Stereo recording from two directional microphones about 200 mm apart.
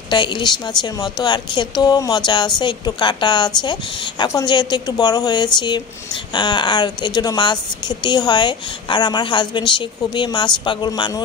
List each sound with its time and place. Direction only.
0.1 s a woman's voice: 25° left (ahead or behind)